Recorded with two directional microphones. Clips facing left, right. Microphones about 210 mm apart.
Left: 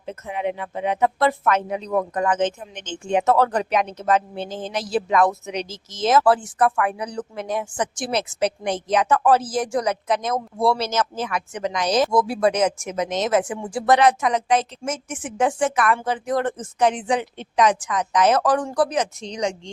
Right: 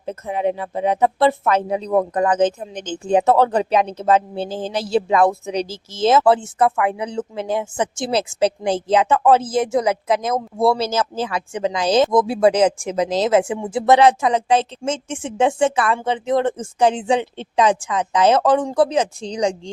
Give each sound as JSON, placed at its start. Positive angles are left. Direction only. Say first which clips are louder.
{"t": 0.0, "sound": "speech", "louder": "right 5 dB", "side_deg": -35}